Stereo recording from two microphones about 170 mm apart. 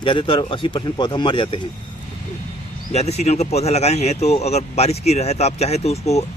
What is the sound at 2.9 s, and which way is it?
Speech, 40° left (ahead or behind).